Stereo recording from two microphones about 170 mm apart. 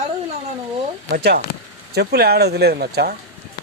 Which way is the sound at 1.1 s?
65° right (ahead or behind).